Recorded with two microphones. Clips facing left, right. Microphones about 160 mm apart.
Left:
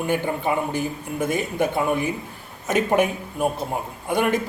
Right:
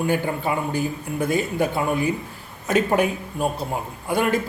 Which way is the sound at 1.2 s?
20° left (ahead or behind).